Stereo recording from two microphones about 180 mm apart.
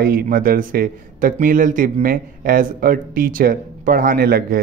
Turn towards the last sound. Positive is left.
turn(degrees=-55)  # may be behind; listen again after turning